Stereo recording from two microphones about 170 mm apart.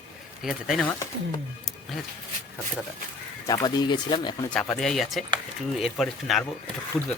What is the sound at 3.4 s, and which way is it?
Speech, 25° left (ahead or behind).